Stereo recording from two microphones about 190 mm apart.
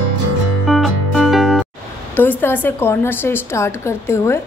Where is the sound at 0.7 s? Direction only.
Centre (ahead or behind).